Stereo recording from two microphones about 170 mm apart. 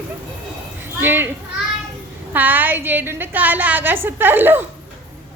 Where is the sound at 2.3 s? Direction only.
10° right (ahead or behind).